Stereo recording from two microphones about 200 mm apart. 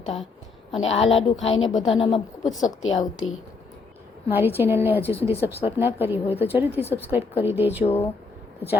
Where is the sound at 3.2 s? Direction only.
90° left.